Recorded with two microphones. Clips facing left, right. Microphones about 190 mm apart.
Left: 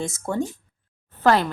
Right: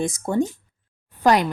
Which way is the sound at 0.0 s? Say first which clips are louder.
Right 4 dB; 15° right (ahead or behind).